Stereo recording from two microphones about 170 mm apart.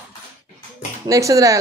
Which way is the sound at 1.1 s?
20° right (ahead or behind).